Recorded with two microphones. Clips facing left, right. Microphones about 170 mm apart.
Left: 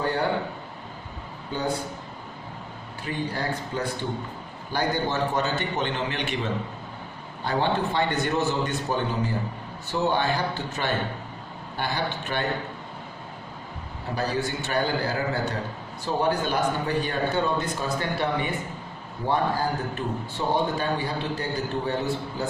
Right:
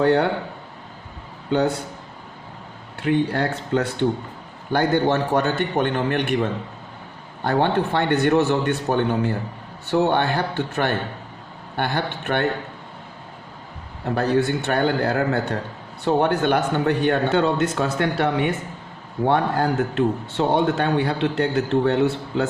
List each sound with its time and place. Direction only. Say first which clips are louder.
0.0 s a man's voice: right 9 dB; 65° right (ahead or behind)
1.5 s a man's voice: right 9 dB; 70° right (ahead or behind)
3.0 s a man's voice: right 9 dB; 65° right (ahead or behind)
14.2 s a man's voice: right 7 dB; 60° right (ahead or behind)